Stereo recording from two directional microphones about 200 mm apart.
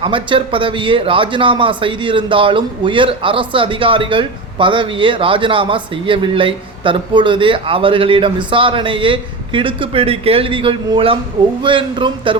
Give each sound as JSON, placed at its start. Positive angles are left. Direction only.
{"t": 0.0, "sound": "a man's voice", "side_deg": -25}